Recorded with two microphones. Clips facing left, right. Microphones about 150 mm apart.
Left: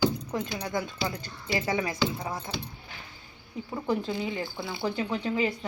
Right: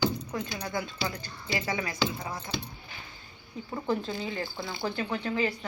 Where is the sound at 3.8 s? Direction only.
15° left (ahead or behind).